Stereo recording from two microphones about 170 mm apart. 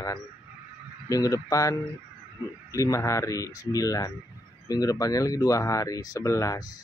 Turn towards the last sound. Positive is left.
turn(degrees=20)  # may be behind; listen again after turning